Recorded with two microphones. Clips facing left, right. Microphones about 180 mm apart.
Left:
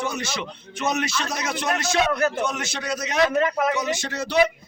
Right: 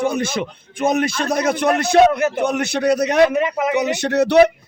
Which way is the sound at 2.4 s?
60° right (ahead or behind).